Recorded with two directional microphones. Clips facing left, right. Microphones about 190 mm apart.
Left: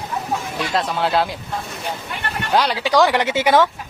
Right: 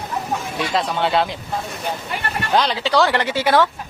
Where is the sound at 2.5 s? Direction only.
10° left (ahead or behind).